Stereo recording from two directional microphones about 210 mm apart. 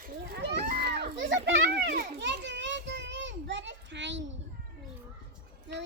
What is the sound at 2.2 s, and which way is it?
Children playing, 55° right (ahead or behind).